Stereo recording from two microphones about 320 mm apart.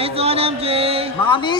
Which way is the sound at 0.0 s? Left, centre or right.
Centre.